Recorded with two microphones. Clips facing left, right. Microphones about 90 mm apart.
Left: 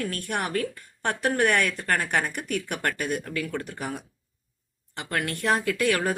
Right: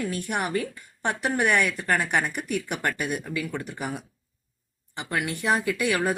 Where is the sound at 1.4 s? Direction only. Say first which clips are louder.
Right 2 dB; 55° left (ahead or behind).